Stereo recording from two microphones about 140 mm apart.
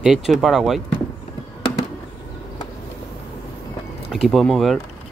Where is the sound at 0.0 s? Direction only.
Centre (ahead or behind).